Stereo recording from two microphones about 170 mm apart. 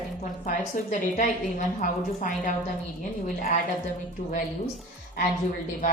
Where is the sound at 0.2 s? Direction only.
50° left (ahead or behind).